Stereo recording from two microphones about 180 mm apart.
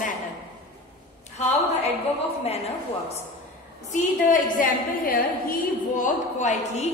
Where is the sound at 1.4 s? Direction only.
35° left (ahead or behind).